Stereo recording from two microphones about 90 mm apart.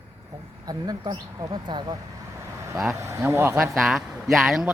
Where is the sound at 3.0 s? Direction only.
35° right (ahead or behind).